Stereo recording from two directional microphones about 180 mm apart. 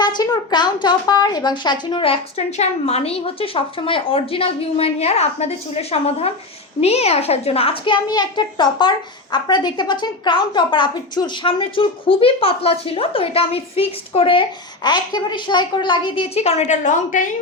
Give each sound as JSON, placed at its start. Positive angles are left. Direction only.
{"t": 0.0, "sound": "a woman's voice", "side_deg": 25}